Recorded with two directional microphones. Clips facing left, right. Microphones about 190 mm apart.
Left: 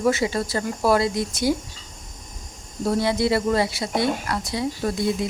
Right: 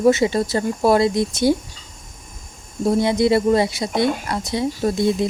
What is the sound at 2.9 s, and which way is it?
Speech, 20° right (ahead or behind).